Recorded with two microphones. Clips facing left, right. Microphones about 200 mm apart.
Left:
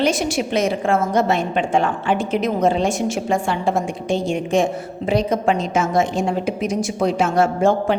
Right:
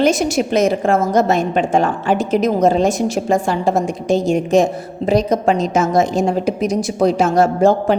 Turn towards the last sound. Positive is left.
turn(degrees=-40)  # may be behind; listen again after turning